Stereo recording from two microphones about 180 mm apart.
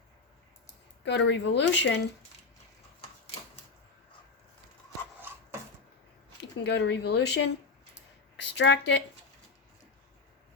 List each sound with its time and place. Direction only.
1.0 s speech: 80° left
6.7 s speech: 70° left (ahead or behind)